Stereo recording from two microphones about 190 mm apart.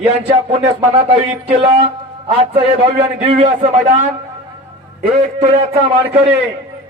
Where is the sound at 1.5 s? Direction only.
25° right (ahead or behind).